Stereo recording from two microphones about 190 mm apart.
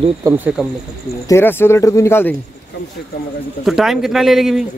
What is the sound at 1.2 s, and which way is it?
Speech, 15° left (ahead or behind).